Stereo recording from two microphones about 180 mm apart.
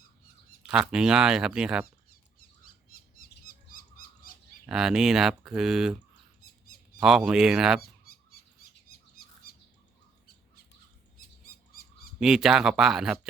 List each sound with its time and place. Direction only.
0.7 s speech: 5° right (ahead or behind)
2.9 s a sound: 50° left (ahead or behind)
4.6 s speech: 5° right (ahead or behind)
7.0 s speech: 5° right (ahead or behind)
7.8 s a sound: 55° left (ahead or behind)
12.2 s speech: centre (ahead or behind)